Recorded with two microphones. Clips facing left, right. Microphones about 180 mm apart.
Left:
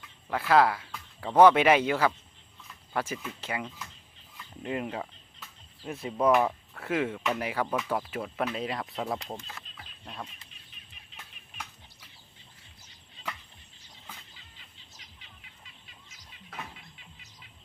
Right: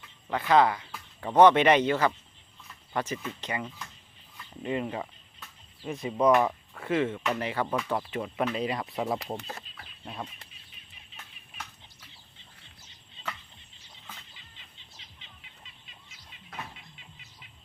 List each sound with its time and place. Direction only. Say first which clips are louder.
0.3 s a man's voice: even; 5° left (ahead or behind)
14.3 s bird: right 1 dB; 20° right (ahead or behind)